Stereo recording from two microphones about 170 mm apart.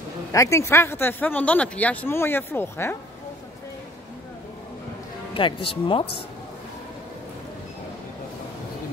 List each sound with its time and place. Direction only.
0.3 s speech: 15° left (ahead or behind)
5.3 s speech: 30° left (ahead or behind)